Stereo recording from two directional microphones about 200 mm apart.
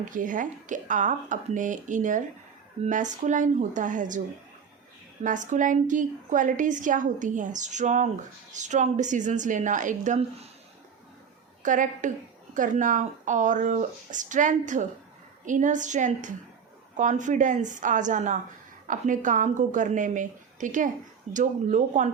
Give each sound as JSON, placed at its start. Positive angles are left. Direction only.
{"t": 0.0, "sound": "a woman's voice", "side_deg": -40}
{"t": 5.2, "sound": "a woman's voice", "side_deg": -40}
{"t": 11.6, "sound": "a woman's voice", "side_deg": -40}